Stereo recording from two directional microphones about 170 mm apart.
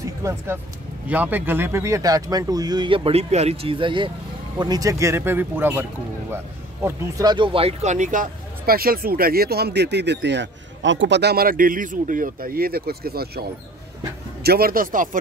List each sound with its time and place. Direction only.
0.0 s speech: 15° right (ahead or behind); by 15.0 s 55° right (ahead or behind)